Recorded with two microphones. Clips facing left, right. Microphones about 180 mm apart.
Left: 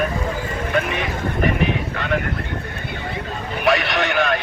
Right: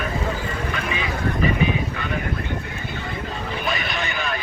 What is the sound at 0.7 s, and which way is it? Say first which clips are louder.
Vehicle: left 5 dB; 65° left (ahead or behind).